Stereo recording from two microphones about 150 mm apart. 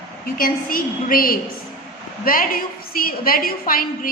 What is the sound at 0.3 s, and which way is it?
A woman's voice, 70° left (ahead or behind).